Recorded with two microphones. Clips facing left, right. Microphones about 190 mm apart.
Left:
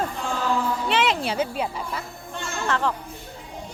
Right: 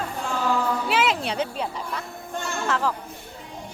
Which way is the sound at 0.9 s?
Centre (ahead or behind).